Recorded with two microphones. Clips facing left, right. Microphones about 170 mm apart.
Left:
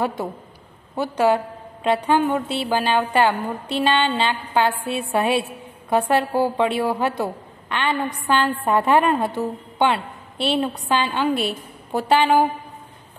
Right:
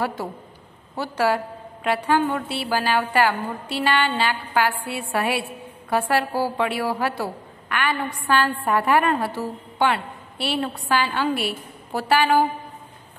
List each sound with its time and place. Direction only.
0.0 s a woman's voice: 20° left (ahead or behind)